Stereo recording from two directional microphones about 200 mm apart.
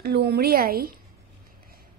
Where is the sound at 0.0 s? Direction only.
55° right (ahead or behind).